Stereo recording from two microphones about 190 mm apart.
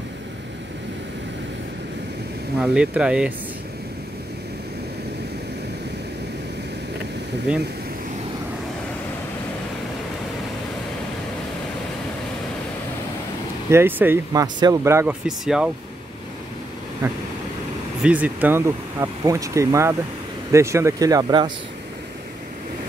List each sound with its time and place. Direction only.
2.6 s speech: 5° right (ahead or behind)
13.7 s speech: 10° right (ahead or behind)
15.2 s speech: 5° right (ahead or behind)
18.0 s speech: 10° right (ahead or behind)